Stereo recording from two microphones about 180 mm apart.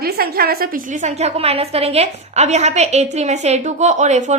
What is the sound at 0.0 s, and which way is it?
A woman's voice, 55° right (ahead or behind).